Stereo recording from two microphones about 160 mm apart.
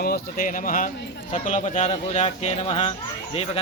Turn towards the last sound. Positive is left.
turn(degrees=40)  # may be behind; listen again after turning